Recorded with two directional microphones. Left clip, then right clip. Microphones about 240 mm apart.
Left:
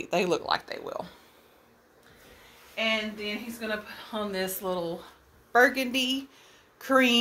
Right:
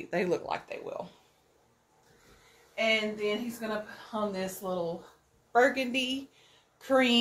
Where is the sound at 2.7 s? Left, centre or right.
Left.